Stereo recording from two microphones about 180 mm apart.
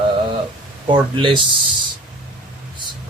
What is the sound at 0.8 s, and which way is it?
Speech, 25° right (ahead or behind).